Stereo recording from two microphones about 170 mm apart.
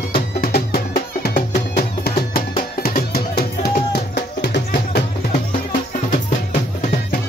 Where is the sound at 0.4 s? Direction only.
65° left (ahead or behind).